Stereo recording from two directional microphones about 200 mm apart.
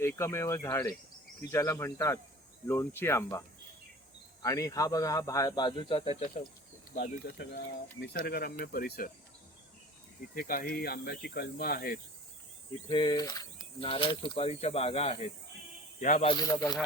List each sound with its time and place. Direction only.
0.0 s speech: 10° left (ahead or behind)
4.4 s speech: 15° left (ahead or behind)
6.9 s speech: 50° left (ahead or behind)
10.3 s speech: 45° left (ahead or behind)
12.9 s speech: 20° left (ahead or behind)
16.3 s speech: 20° left (ahead or behind)